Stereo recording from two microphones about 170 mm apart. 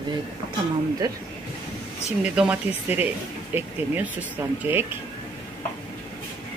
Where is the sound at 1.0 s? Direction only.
20° right (ahead or behind).